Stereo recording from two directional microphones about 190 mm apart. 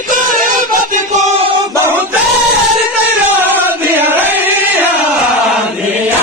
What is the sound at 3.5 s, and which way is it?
Chant, 10° right (ahead or behind).